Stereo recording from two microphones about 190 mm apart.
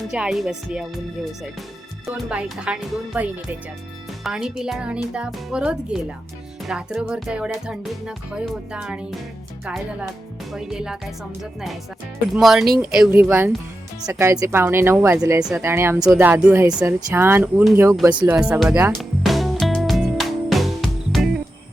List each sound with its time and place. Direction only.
0.1 s speech: 5° right (ahead or behind)
2.3 s speech: 5° right (ahead or behind)
12.3 s speech: centre (ahead or behind)
18.0 s speech: 25° right (ahead or behind)
18.3 s music: 10° right (ahead or behind)